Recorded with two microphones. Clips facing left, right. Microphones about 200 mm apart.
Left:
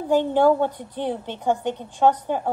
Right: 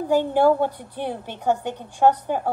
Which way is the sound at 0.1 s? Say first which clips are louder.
Left 1 dB; 10° right (ahead or behind).